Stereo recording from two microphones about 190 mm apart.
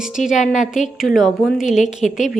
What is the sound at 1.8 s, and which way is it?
Speech, 40° left (ahead or behind).